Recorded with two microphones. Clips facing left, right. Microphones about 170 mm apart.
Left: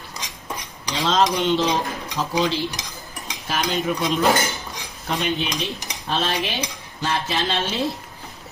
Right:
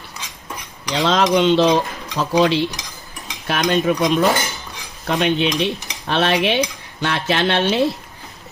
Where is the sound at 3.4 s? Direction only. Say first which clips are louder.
Right 6 dB; 65° right (ahead or behind).